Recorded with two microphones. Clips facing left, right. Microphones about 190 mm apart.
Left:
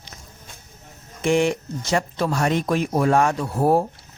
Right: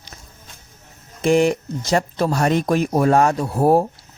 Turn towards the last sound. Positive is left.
turn(degrees=-40)  # may be behind; listen again after turning